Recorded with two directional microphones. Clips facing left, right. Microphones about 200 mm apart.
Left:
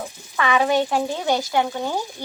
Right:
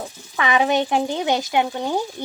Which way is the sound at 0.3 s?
15° right (ahead or behind).